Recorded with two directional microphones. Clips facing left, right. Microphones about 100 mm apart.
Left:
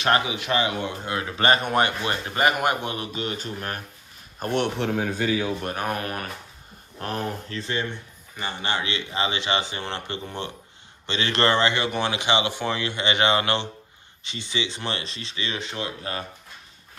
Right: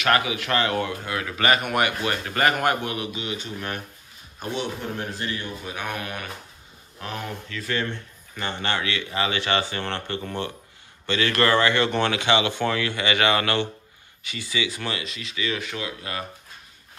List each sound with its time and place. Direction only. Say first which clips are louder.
0.0 s speech: even; 25° left (ahead or behind)
3.0 s speech: even; 40° left (ahead or behind)
4.4 s a man's voice: left 5 dB; 60° left (ahead or behind); by 5.0 s 90° left
5.5 s a man's voice: left 6 dB; 65° left (ahead or behind)
5.8 s speech: left 3 dB; 40° left (ahead or behind)
8.4 s speech: right 1 dB; 15° left (ahead or behind); by 16.3 s 35° left (ahead or behind)